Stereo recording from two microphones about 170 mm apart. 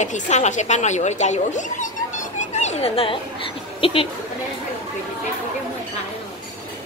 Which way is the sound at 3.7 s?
30° left (ahead or behind).